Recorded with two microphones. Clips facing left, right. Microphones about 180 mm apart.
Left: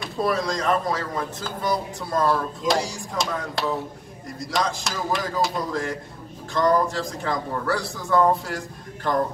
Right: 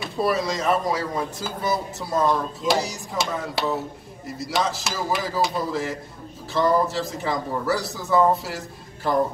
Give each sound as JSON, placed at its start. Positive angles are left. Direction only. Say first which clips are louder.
{"t": 0.0, "sound": "speech", "louder": "right 1 dB", "side_deg": -5}